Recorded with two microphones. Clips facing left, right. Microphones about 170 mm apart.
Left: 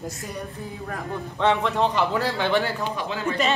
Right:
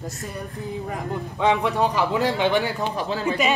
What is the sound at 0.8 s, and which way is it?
Speech, 15° right (ahead or behind).